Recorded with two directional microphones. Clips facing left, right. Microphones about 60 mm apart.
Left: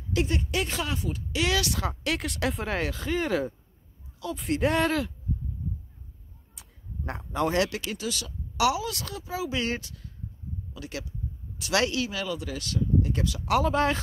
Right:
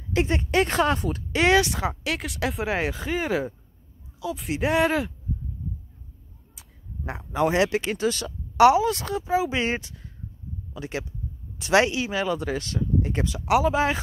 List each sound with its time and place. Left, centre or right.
0.1 s speech: right
2.0 s speech: centre
2.8 s speech: centre
6.5 s a sound: centre
7.4 s speech: right
13.5 s speech: centre